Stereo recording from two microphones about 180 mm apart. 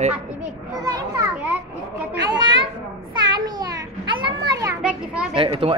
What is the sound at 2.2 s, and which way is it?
Speech, 25° right (ahead or behind).